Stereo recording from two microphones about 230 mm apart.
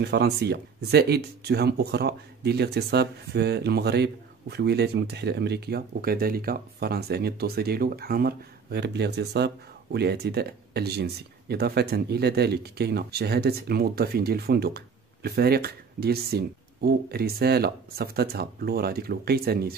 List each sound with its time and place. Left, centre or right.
0.0 s speech: right